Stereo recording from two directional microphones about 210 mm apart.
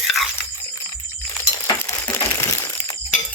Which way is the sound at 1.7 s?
15° left (ahead or behind).